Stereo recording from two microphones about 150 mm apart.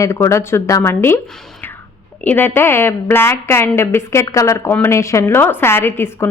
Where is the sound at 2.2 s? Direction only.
15° left (ahead or behind).